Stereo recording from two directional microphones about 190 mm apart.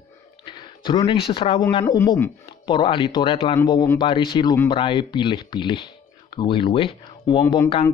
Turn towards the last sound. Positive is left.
turn(degrees=20)  # may be behind; listen again after turning